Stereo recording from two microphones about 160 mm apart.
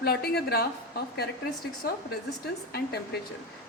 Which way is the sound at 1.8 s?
70° left (ahead or behind).